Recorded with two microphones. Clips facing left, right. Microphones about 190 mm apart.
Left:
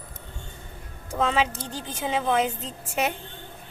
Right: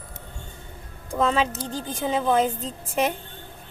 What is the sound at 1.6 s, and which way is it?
Speech, 40° right (ahead or behind).